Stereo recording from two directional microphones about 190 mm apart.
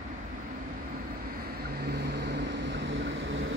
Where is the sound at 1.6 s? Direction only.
55° right (ahead or behind); by 3.4 s 80° right.